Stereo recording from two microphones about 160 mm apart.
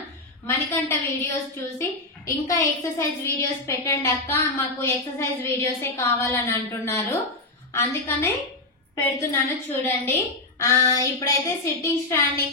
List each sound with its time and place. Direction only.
0.5 s a woman's voice: 15° left (ahead or behind)